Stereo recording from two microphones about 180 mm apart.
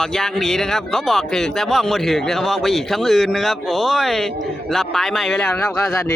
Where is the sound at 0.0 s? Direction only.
5° left (ahead or behind).